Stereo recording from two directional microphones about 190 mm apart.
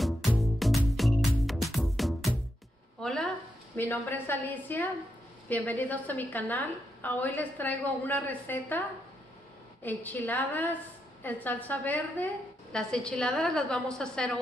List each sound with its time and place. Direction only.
0.0 s music: centre (ahead or behind)
3.0 s a sound: 5° left (ahead or behind)
3.7 s a woman's voice: 10° left (ahead or behind)
9.8 s a woman's voice: 10° left (ahead or behind)